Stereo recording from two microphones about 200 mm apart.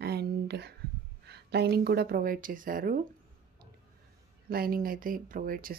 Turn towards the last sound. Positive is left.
turn(degrees=-45)  # may be behind; listen again after turning